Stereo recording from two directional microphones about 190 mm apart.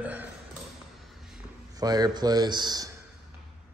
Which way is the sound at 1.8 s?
20° right (ahead or behind).